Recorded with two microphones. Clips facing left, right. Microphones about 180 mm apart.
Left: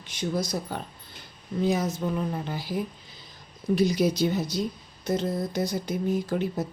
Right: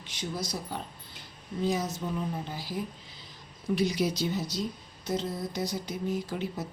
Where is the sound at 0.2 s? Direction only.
50° left (ahead or behind).